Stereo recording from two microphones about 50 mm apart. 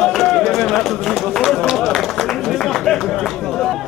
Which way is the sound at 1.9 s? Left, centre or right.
Centre.